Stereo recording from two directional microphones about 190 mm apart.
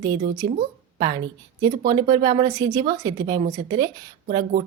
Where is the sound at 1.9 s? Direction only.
20° right (ahead or behind).